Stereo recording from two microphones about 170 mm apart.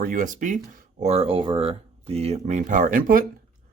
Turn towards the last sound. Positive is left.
turn(degrees=-50)  # may be behind; listen again after turning